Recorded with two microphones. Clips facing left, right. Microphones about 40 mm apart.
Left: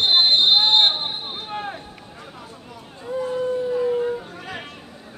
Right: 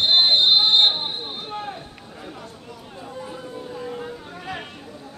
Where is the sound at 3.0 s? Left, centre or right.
Centre.